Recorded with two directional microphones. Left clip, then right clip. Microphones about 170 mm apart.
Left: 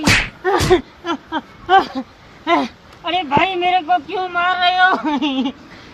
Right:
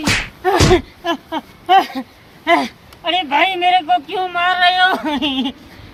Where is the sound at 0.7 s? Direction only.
40° right (ahead or behind).